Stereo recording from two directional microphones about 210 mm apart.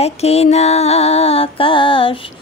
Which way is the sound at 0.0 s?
30° left (ahead or behind).